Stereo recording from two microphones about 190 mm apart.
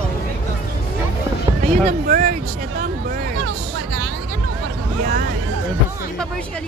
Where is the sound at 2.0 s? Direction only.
45° right (ahead or behind).